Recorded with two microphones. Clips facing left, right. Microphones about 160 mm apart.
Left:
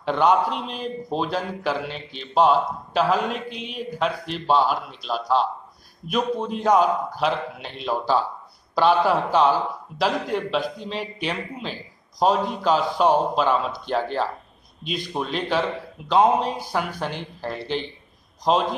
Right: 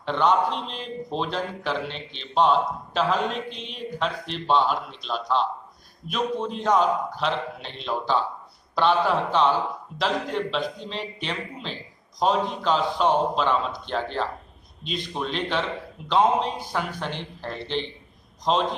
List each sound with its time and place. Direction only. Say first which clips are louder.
0.0 s a man's voice: left 2 dB; 10° left (ahead or behind)